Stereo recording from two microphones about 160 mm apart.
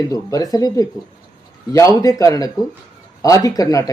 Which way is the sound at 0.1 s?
20° left (ahead or behind).